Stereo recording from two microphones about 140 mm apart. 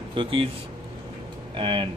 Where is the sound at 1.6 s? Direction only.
40° right (ahead or behind).